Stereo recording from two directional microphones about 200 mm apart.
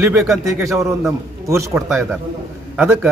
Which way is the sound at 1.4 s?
15° right (ahead or behind).